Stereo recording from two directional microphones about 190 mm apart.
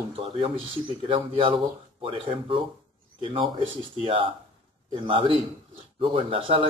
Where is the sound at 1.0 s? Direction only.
25° right (ahead or behind).